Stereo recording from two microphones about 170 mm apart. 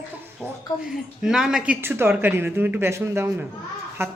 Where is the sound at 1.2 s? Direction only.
Centre (ahead or behind).